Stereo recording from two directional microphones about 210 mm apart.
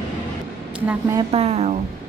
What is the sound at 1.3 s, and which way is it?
Speech, 30° right (ahead or behind).